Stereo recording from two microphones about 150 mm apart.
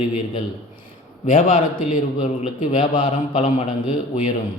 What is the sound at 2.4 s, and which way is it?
A man's voice, 40° left (ahead or behind).